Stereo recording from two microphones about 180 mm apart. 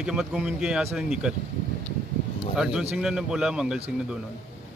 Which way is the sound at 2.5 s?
5° right (ahead or behind).